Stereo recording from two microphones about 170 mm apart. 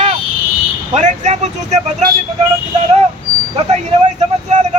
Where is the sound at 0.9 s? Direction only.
45° right (ahead or behind).